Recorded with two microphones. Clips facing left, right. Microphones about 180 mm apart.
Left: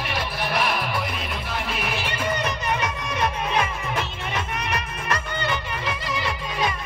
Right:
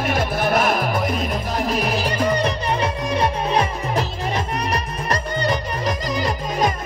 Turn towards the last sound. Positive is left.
turn(degrees=-40)  # may be behind; listen again after turning